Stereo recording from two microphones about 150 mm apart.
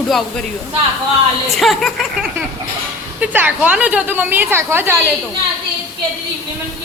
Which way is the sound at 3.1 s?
10° right (ahead or behind).